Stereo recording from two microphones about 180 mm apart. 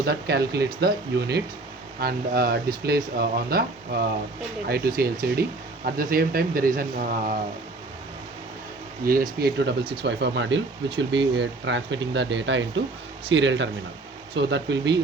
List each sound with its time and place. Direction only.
0.0 s speech: 60° right (ahead or behind)
9.4 s speech: 70° right (ahead or behind); by 13.7 s 90° right
14.3 s speech: 80° right